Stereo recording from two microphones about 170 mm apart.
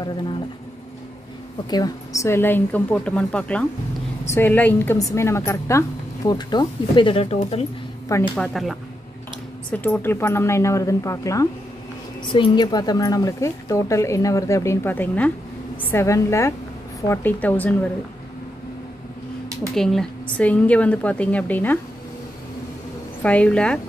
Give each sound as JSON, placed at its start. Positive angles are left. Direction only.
{"t": 0.0, "sound": "speech", "side_deg": 25}
{"t": 1.7, "sound": "a woman's voice", "side_deg": 20}
{"t": 8.4, "sound": "a woman's voice", "side_deg": 0}
{"t": 19.7, "sound": "a woman's voice", "side_deg": 5}
{"t": 23.2, "sound": "a woman's voice", "side_deg": 5}